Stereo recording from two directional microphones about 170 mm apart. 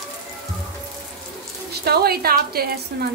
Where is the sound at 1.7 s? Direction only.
70° right (ahead or behind).